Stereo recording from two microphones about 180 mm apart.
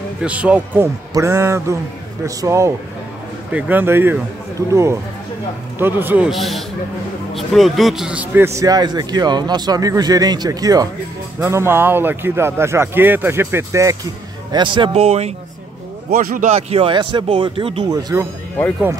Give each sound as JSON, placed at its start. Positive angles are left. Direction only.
{"t": 0.2, "sound": "a man's voice", "side_deg": -5}
{"t": 1.1, "sound": "a man's voice", "side_deg": -20}
{"t": 8.5, "sound": "a man's voice", "side_deg": -20}
{"t": 14.5, "sound": "speech", "side_deg": -25}
{"t": 16.1, "sound": "speech", "side_deg": -50}